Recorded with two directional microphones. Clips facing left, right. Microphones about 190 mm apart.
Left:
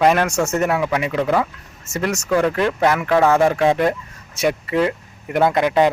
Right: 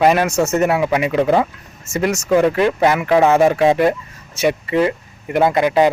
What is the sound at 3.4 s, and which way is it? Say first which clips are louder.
Speech: right 3 dB; 5° right (ahead or behind).